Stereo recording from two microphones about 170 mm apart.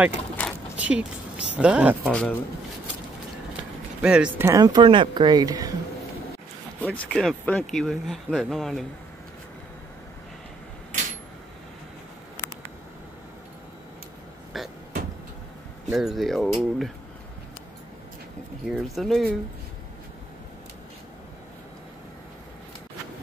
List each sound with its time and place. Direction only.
0.4 s mechanisms: 10° left (ahead or behind)
0.7 s speech: 5° right (ahead or behind)
2.0 s speech: 5° left (ahead or behind)
4.0 s speech: 5° right (ahead or behind)
4.5 s speech: 25° right (ahead or behind)
6.8 s speech: 5° left (ahead or behind)
14.5 s a sound: centre (ahead or behind)
15.9 s speech: centre (ahead or behind)
18.7 s speech: centre (ahead or behind)